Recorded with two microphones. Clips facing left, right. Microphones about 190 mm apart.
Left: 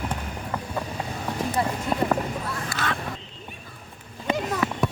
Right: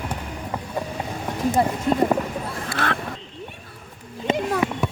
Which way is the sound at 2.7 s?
60° right (ahead or behind).